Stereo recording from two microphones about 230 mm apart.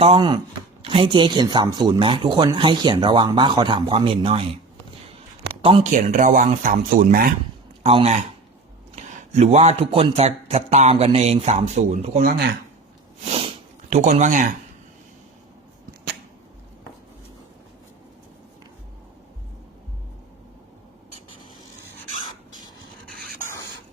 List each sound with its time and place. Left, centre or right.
0.0 s speech: right
5.6 s speech: right
7.9 s a man's voice: right
13.9 s speech: right